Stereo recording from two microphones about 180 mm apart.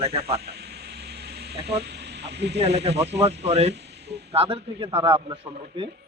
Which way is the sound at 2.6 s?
35° right (ahead or behind).